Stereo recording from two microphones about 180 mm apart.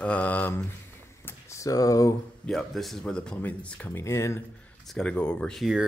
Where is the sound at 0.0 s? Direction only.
10° left (ahead or behind).